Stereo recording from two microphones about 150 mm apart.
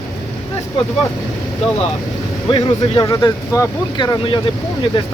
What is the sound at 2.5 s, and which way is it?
Speech, 30° left (ahead or behind).